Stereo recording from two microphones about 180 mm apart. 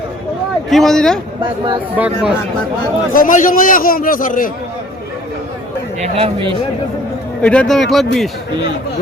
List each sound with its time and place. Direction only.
0.7 s speech: centre (ahead or behind)
1.4 s speech: 25° right (ahead or behind)
2.0 s speech: 5° right (ahead or behind)
3.1 s a man's voice: 50° left (ahead or behind)
6.0 s speech: 35° right (ahead or behind)
7.4 s speech: 5° left (ahead or behind)